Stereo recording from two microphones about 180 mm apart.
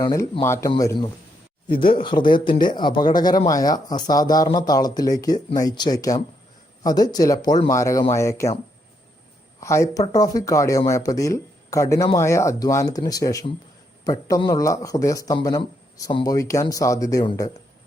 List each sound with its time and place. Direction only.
0.0 s speech: 15° left (ahead or behind)
9.6 s speech: 15° left (ahead or behind)